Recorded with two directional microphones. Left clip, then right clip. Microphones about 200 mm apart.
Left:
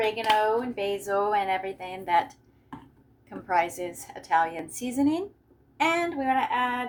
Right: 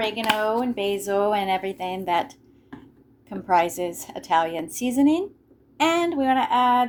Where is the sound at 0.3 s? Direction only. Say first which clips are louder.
Right 1 dB; 35° right (ahead or behind).